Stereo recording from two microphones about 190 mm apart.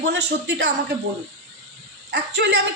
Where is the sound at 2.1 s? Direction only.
65° right (ahead or behind).